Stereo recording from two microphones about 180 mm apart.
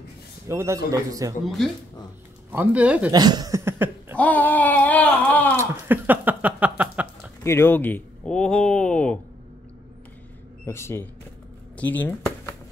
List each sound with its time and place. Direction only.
0.5 s a man's voice: 15° right (ahead or behind)
1.4 s a man's voice: centre (ahead or behind)
3.1 s speech: 20° right (ahead or behind)
4.2 s a sound: 10° left (ahead or behind)
5.6 s a sound: 10° right (ahead or behind)
7.4 s speech: 15° left (ahead or behind)
10.6 s speech: 15° left (ahead or behind)